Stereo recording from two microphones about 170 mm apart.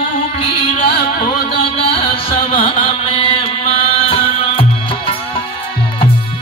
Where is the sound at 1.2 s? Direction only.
55° left (ahead or behind).